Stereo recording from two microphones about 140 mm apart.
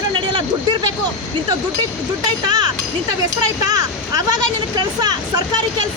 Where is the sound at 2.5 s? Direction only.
30° right (ahead or behind).